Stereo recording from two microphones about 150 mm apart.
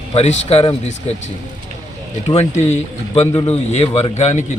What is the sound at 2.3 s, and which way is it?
A man's voice, 40° left (ahead or behind).